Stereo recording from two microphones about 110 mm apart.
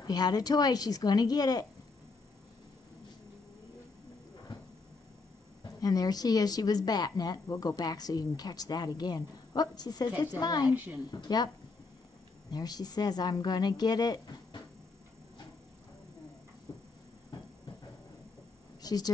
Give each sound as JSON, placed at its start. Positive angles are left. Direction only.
{"t": 0.0, "sound": "a woman's voice", "side_deg": 40}
{"t": 5.8, "sound": "a woman's voice", "side_deg": 35}
{"t": 10.7, "sound": "a woman's voice", "side_deg": -15}
{"t": 11.1, "sound": "a woman's voice", "side_deg": 40}
{"t": 16.7, "sound": "a sound", "side_deg": 40}
{"t": 18.8, "sound": "a sound", "side_deg": 35}